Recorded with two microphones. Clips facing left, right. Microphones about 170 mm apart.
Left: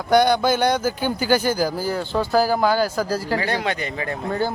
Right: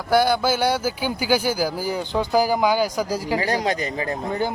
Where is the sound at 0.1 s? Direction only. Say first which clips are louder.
Left 2 dB; 5° right (ahead or behind).